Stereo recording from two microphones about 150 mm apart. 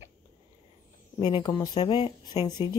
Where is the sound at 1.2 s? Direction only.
30° left (ahead or behind).